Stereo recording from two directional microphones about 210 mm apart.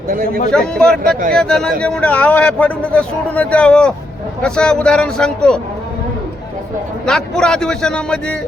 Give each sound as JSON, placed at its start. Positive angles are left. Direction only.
{"t": 0.1, "sound": "a man's voice", "side_deg": -40}
{"t": 0.5, "sound": "a man's voice", "side_deg": 5}
{"t": 7.0, "sound": "a man's voice", "side_deg": 5}